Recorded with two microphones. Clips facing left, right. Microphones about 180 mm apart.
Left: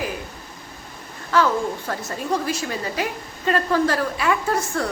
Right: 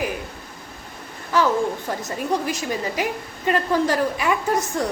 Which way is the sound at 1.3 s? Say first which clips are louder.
Even; 15° right (ahead or behind).